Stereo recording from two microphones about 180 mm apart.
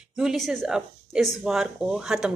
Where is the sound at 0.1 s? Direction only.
Centre (ahead or behind).